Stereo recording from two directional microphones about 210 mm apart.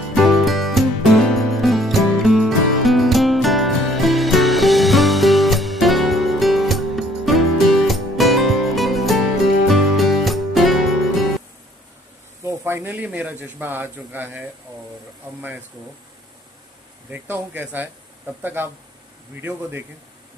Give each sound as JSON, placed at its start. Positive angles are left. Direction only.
{"t": 0.1, "sound": "music", "side_deg": 0}
{"t": 12.4, "sound": "a sound", "side_deg": -10}
{"t": 17.1, "sound": "speech", "side_deg": -10}